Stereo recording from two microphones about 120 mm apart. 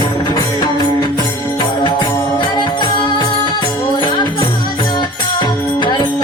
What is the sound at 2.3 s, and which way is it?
Music, 40° left (ahead or behind).